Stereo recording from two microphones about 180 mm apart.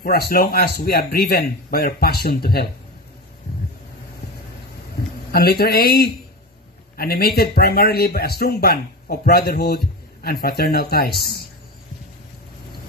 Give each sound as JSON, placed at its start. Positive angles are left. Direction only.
{"t": 0.0, "sound": "speech", "side_deg": 55}
{"t": 5.3, "sound": "speech", "side_deg": 60}